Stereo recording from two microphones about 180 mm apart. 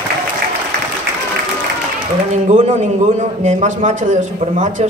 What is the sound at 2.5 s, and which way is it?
A man's voice, 40° right (ahead or behind).